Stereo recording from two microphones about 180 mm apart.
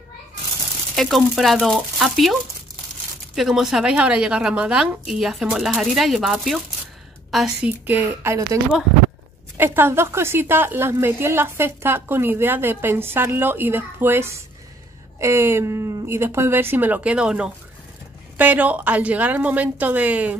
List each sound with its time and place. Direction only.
0.9 s a woman's voice: centre (ahead or behind)
3.3 s a woman's voice: centre (ahead or behind)
9.6 s a woman's voice: 10° right (ahead or behind)